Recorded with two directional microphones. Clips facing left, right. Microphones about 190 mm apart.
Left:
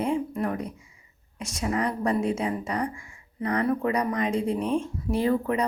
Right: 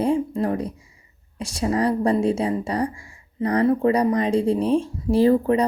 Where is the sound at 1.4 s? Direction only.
35° right (ahead or behind).